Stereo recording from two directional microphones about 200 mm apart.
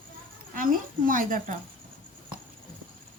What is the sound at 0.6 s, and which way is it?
A woman's voice, 40° right (ahead or behind).